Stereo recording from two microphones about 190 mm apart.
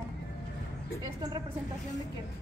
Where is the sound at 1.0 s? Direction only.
20° right (ahead or behind).